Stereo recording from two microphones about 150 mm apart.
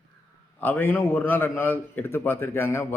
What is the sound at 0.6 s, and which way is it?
A man's voice, 15° left (ahead or behind).